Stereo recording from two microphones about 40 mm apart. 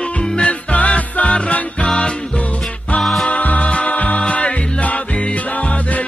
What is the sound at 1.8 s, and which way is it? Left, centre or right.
Music, left.